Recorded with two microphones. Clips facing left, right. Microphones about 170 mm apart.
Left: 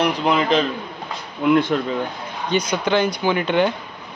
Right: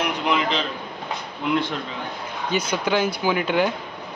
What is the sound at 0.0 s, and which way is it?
Speech, 35° left (ahead or behind).